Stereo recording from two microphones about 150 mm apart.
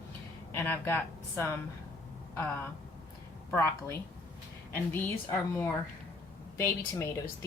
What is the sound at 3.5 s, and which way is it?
A woman's voice, 15° left (ahead or behind).